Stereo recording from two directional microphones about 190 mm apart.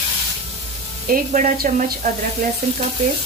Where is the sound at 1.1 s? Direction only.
45° right (ahead or behind).